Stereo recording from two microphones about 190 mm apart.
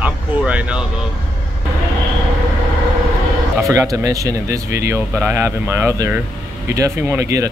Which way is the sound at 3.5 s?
15° right (ahead or behind).